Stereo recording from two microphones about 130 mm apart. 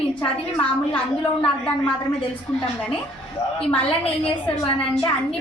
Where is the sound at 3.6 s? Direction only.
10° left (ahead or behind).